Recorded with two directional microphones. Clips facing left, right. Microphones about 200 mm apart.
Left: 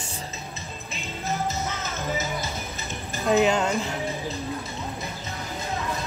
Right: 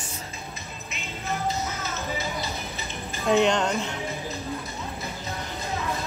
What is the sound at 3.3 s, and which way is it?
Speech, 5° left (ahead or behind).